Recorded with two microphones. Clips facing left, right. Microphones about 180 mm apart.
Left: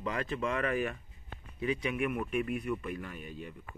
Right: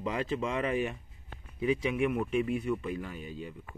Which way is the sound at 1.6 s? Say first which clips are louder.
Right 4 dB; 5° right (ahead or behind).